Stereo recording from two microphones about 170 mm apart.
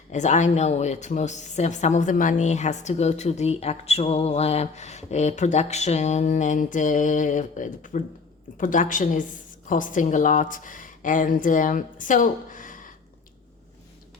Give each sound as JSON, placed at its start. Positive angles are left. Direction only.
{"t": 0.1, "sound": "a woman's voice", "side_deg": 45}